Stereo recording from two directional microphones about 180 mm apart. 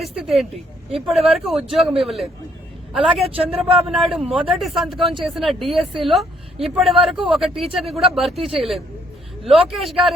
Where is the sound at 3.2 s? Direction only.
30° right (ahead or behind).